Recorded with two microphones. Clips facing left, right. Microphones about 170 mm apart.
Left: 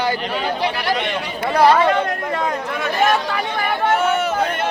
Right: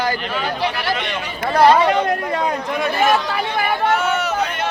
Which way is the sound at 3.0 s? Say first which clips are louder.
Left 1 dB; 5° right (ahead or behind).